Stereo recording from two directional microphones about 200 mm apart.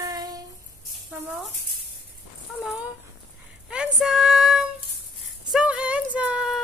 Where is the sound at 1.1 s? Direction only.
5° right (ahead or behind).